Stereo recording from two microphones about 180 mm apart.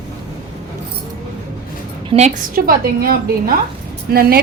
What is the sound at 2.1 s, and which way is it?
Speech, 30° right (ahead or behind).